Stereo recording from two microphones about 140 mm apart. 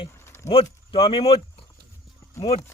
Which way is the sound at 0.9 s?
40° left (ahead or behind).